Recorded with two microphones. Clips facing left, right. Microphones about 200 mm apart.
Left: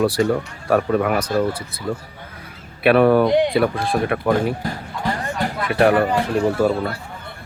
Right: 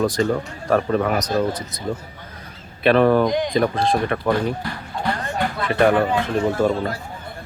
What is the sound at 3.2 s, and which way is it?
Speech, 70° left (ahead or behind).